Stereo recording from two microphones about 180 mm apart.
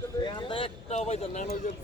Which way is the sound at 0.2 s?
25° left (ahead or behind).